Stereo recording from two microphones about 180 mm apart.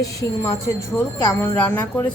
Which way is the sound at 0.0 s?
20° left (ahead or behind).